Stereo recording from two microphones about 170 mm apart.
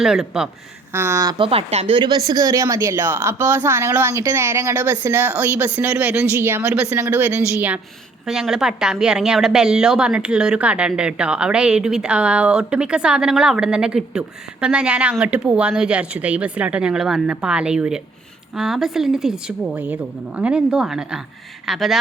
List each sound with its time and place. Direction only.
0.0 s speech: 5° right (ahead or behind)
0.9 s speech: 15° right (ahead or behind); by 2.0 s 40° right (ahead or behind)
2.0 s speech: 25° right (ahead or behind); by 21.9 s centre (ahead or behind)